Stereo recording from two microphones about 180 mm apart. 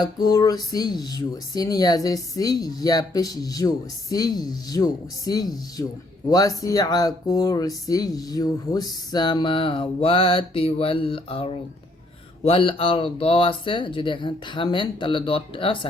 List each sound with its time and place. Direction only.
0.0 s speech: 20° left (ahead or behind)